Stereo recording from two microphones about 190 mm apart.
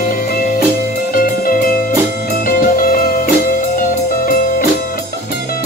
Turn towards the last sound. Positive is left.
turn(degrees=45)  # may be behind; listen again after turning